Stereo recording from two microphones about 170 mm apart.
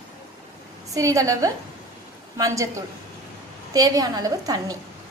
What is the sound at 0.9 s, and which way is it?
A woman's voice, 20° right (ahead or behind).